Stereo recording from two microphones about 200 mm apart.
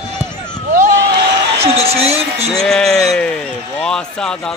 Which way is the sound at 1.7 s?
30° right (ahead or behind).